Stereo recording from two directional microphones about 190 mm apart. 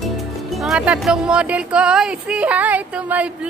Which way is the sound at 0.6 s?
5° right (ahead or behind).